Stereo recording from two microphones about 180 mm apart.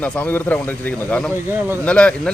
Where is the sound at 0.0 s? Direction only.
10° left (ahead or behind).